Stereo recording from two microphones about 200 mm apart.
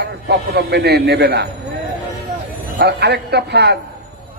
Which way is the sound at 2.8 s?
55° right (ahead or behind).